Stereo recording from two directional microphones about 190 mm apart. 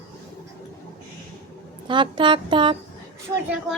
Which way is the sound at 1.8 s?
25° right (ahead or behind).